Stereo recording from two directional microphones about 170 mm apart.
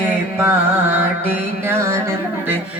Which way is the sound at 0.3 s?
15° right (ahead or behind).